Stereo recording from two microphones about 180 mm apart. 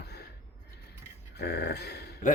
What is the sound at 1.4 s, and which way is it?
Dog, 65° left (ahead or behind).